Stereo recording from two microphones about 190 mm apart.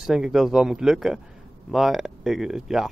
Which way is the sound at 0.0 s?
Centre (ahead or behind).